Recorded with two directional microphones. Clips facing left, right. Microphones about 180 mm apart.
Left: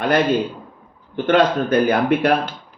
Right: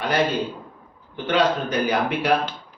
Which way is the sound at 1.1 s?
55° left (ahead or behind).